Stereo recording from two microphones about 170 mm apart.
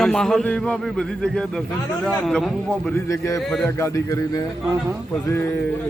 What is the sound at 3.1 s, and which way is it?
A man's voice, 20° left (ahead or behind).